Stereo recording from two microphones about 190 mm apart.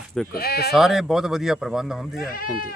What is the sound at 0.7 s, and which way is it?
Speech, centre (ahead or behind).